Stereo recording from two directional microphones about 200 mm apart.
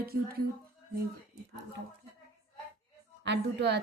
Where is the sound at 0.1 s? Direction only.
50° right (ahead or behind).